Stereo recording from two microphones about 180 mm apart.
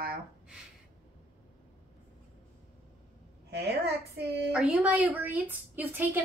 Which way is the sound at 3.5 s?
65° right (ahead or behind).